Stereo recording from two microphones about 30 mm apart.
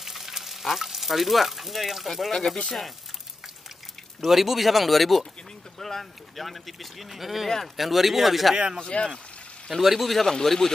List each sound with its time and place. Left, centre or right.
0.0 s speech: centre
4.3 s speech: centre
7.4 s speech: centre
7.7 s speech: centre
8.7 s speech: left
9.7 s speech: centre
10.2 s speech: centre